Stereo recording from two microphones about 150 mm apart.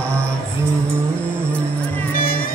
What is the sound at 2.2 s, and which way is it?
Music, 75° left (ahead or behind).